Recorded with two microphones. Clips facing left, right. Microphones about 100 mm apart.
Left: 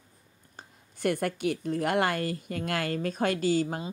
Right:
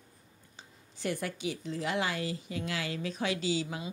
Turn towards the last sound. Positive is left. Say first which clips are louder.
# left 6 dB
turn(degrees=50)  # may be behind; listen again after turning